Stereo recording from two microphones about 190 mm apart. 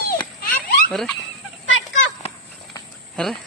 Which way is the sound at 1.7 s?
85° left.